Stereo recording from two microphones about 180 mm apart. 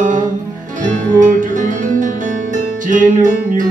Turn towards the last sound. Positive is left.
turn(degrees=-45)  # may be behind; listen again after turning